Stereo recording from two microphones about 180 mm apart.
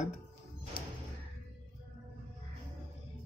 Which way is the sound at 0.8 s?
55° left (ahead or behind).